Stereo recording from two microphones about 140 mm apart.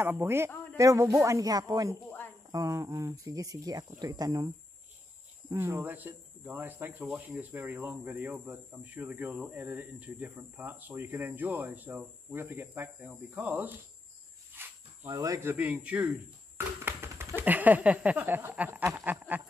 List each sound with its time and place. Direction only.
0.0 s speech: 15° right (ahead or behind)
5.5 s speech: 20° right (ahead or behind)
14.5 s cricket: 20° right (ahead or behind)
15.5 s speech: 10° right (ahead or behind)
16.5 s a sound: 15° right (ahead or behind)
17.4 s speech: 10° right (ahead or behind)